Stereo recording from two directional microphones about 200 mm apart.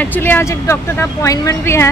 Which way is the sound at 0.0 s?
10° left (ahead or behind).